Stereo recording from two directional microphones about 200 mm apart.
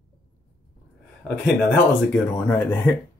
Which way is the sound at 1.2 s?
60° left (ahead or behind).